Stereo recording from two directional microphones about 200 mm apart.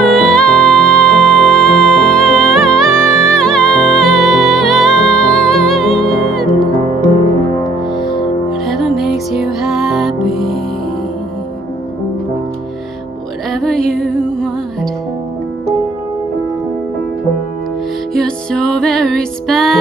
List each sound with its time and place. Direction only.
0.0 s music: 5° left (ahead or behind)
8.6 s music: centre (ahead or behind)
13.5 s music: centre (ahead or behind)
18.1 s music: 5° left (ahead or behind)